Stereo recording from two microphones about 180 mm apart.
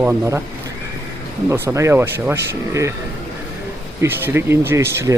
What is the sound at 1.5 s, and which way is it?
Speech, 15° right (ahead or behind).